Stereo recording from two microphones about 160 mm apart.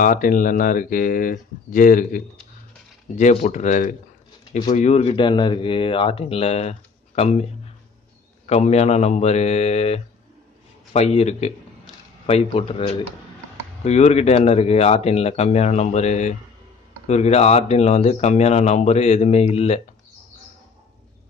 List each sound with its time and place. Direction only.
0.0 s speech: 60° left (ahead or behind); by 19.8 s 40° left (ahead or behind)